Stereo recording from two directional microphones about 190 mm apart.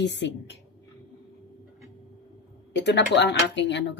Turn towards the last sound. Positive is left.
turn(degrees=70)  # may be behind; listen again after turning